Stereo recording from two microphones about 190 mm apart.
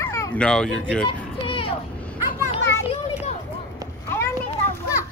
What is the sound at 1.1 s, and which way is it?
Children playing, 30° left (ahead or behind).